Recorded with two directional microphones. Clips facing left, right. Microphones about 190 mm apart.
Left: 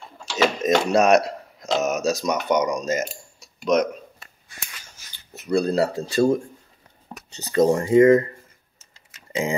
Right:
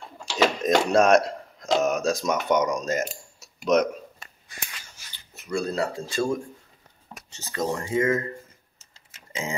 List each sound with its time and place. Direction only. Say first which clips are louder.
0.4 s speech: left 1 dB; centre (ahead or behind)
5.5 s speech: left 6 dB; 35° left (ahead or behind)
7.5 s speech: left 10 dB; 20° left (ahead or behind)
7.8 s speech: left 9 dB; 35° left (ahead or behind)